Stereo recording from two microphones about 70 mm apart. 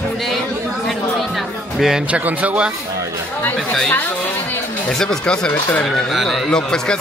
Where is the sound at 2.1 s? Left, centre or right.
Right.